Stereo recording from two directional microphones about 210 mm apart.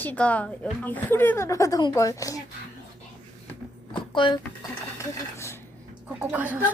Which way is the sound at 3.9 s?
25° left (ahead or behind).